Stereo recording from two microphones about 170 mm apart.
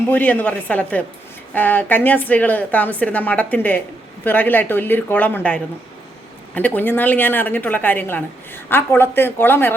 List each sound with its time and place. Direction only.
0.1 s a woman's voice: 10° left (ahead or behind)